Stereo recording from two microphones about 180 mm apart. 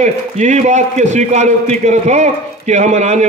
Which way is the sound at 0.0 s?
40° right (ahead or behind).